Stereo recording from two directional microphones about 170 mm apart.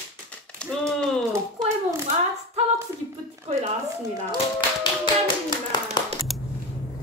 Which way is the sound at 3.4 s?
40° right (ahead or behind).